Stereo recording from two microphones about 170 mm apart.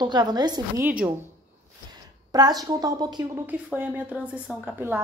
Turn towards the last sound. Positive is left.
turn(degrees=-10)  # may be behind; listen again after turning